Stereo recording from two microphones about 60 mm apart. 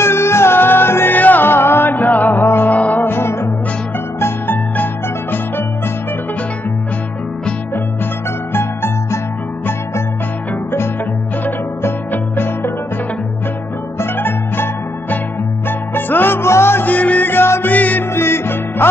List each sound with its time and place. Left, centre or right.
0.0 s music: left
2.3 s music: left
2.7 s music: left
3.1 s music: left
8.5 s music: left
13.9 s music: left
16.8 s music: left
17.3 s music: left
18.1 s music: left